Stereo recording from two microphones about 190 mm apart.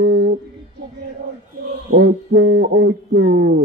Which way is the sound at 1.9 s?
65° right (ahead or behind).